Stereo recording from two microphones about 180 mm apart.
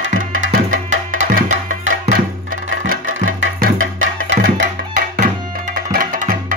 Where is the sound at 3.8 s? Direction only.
90° right.